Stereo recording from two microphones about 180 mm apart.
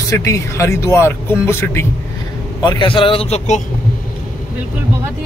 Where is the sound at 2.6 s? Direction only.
25° left (ahead or behind).